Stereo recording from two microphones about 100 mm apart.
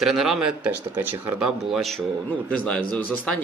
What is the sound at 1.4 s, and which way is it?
Speech, centre (ahead or behind).